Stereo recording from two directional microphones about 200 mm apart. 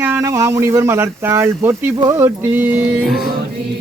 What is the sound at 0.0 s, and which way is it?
Speech, 15° right (ahead or behind).